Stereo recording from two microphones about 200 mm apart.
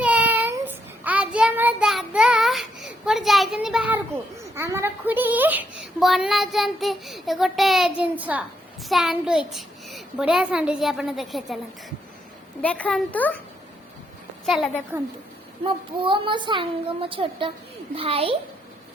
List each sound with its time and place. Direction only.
0.0 s child singing: 5° right (ahead or behind)
3.1 s a child's voice: centre (ahead or behind)
12.6 s a child's voice: 5° left (ahead or behind)
14.4 s a child's voice: centre (ahead or behind)
15.6 s speech: 25° right (ahead or behind)